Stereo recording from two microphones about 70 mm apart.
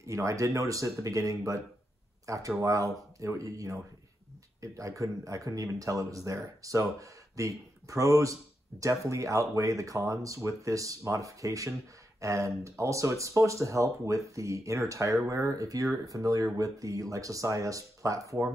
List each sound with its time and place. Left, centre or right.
0.0 s speech: right